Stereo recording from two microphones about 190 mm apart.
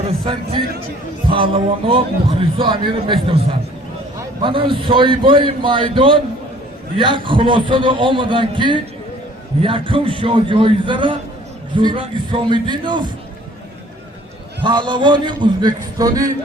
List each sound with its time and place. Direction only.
1.3 s a man's voice: 30° right (ahead or behind)
4.4 s a man's voice: 25° right (ahead or behind)
14.6 s a man's voice: 25° right (ahead or behind)